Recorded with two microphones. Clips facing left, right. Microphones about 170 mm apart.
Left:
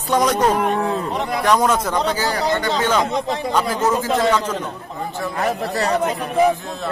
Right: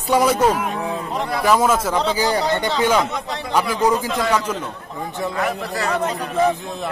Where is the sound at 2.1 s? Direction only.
15° right (ahead or behind).